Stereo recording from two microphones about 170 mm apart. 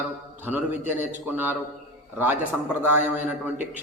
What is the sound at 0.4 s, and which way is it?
Speech, 10° right (ahead or behind).